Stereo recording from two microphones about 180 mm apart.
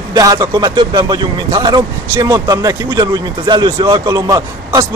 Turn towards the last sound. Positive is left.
turn(degrees=-20)  # may be behind; listen again after turning